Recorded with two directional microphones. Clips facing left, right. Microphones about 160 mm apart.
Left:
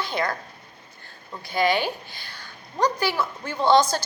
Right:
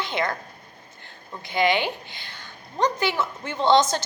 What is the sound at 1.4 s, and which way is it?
A woman's voice, 20° right (ahead or behind).